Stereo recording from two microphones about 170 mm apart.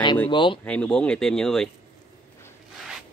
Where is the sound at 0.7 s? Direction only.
5° left (ahead or behind).